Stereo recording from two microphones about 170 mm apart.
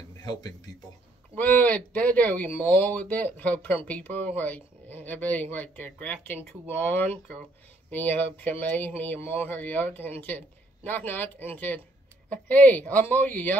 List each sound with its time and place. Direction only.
0.2 s speech: 25° left (ahead or behind)
1.3 s speech: 10° left (ahead or behind)